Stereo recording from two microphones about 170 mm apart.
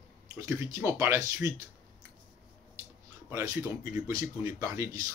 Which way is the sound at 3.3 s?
15° right (ahead or behind).